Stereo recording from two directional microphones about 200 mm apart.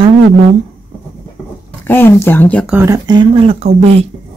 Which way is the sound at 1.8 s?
10° left (ahead or behind).